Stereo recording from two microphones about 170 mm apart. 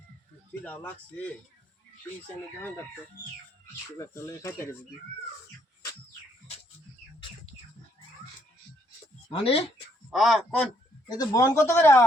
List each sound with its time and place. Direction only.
0.6 s speech: 10° left (ahead or behind)
3.9 s speech: 15° left (ahead or behind)
9.3 s speech: 35° left (ahead or behind)
10.1 s a man's voice: centre (ahead or behind)
11.1 s speech: 20° left (ahead or behind)